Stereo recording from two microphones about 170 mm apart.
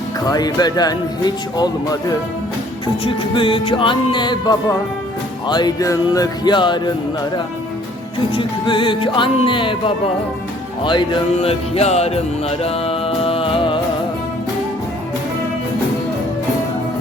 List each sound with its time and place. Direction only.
0.3 s speech: 20° left (ahead or behind)
8.3 s speech: 30° left (ahead or behind)
10.8 s music: 25° left (ahead or behind)